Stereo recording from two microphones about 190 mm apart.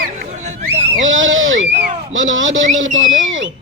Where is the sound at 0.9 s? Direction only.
90° right.